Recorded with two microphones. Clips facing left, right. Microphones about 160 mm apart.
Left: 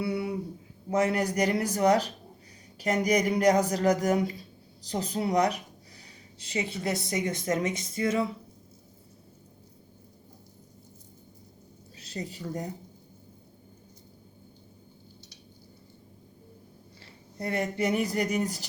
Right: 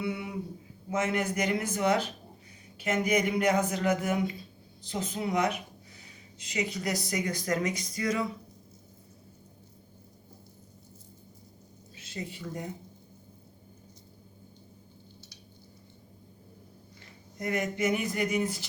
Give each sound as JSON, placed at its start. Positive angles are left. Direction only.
{"t": 0.0, "sound": "a sound", "side_deg": 35}
{"t": 0.9, "sound": "a woman's voice", "side_deg": 35}
{"t": 11.9, "sound": "speech", "side_deg": 40}
{"t": 17.3, "sound": "speech", "side_deg": 35}